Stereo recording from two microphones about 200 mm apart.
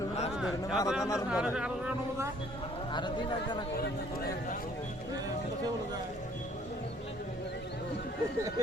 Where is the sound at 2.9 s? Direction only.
20° left (ahead or behind).